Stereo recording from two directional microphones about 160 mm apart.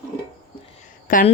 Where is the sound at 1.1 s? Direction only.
55° left (ahead or behind).